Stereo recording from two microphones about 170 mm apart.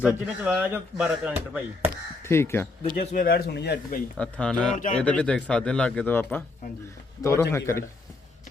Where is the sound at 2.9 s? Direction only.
60° left (ahead or behind); by 4.0 s 80° left.